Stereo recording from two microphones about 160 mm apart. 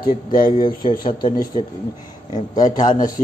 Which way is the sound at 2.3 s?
25° left (ahead or behind).